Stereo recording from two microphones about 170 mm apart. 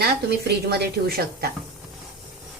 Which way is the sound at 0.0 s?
70° right (ahead or behind).